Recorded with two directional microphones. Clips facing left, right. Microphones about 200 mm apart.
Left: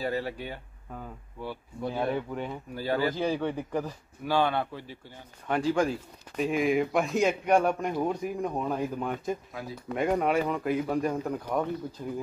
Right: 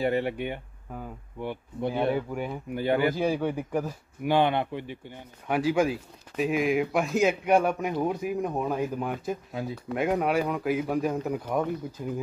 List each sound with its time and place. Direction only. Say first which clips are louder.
0.0 s speech: right 5 dB; 20° right (ahead or behind)
2.0 s speech: right 3 dB; 10° right (ahead or behind)
2.7 s speech: right 4 dB; 20° right (ahead or behind)
5.5 s speech: right 2 dB; 10° right (ahead or behind)